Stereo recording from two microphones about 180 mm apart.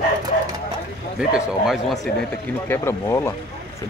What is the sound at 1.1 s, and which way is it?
A man's voice, 5° right (ahead or behind).